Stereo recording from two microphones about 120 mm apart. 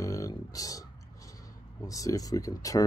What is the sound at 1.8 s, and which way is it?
Speech, 30° left (ahead or behind).